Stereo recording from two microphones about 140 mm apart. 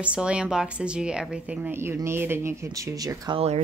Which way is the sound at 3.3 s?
50° right (ahead or behind).